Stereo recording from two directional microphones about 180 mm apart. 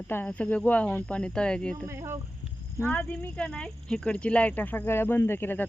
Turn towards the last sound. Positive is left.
turn(degrees=10)  # may be behind; listen again after turning